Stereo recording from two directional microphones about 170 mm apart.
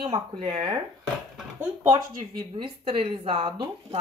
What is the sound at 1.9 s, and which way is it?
Speech, 25° right (ahead or behind).